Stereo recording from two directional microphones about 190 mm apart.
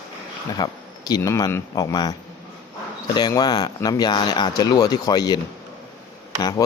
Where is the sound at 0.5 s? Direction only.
20° left (ahead or behind).